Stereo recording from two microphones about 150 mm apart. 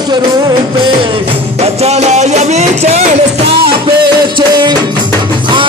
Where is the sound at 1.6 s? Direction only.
45° right (ahead or behind).